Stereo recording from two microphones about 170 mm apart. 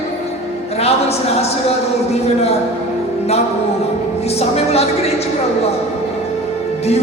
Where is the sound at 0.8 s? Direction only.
35° left (ahead or behind).